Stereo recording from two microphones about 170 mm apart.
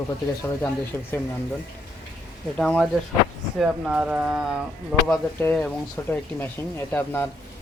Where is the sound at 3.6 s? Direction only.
5° right (ahead or behind).